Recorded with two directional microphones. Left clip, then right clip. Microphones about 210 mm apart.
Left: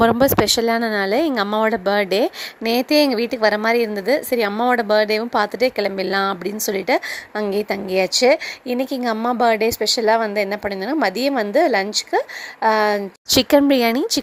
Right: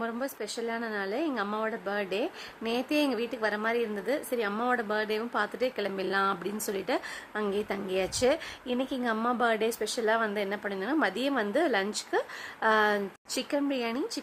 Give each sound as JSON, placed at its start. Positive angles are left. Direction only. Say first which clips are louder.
{"t": 0.0, "sound": "speech", "louder": "left 19 dB", "side_deg": 45}
{"t": 13.3, "sound": "speech", "louder": "left 17 dB", "side_deg": 45}